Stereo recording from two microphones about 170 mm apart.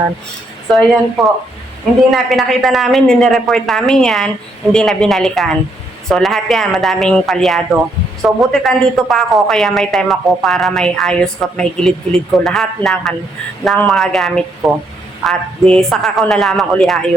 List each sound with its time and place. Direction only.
0.7 s a woman's voice: centre (ahead or behind)